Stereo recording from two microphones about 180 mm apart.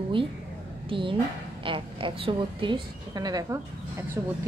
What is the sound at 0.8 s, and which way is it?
A woman's voice, 30° right (ahead or behind).